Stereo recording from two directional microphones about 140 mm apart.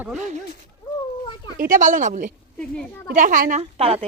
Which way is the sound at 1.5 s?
80° right.